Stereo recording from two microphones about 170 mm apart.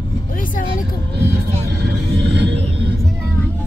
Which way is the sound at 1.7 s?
80° right.